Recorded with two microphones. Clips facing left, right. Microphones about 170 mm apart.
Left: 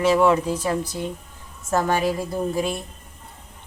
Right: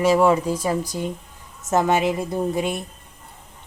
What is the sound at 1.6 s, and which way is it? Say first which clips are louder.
A woman's voice: right 2 dB; 20° right (ahead or behind).